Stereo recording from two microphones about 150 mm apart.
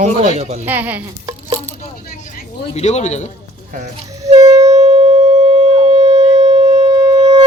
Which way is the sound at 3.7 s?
50° right (ahead or behind).